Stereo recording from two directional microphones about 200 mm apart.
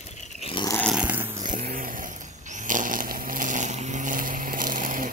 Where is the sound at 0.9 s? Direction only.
10° right (ahead or behind).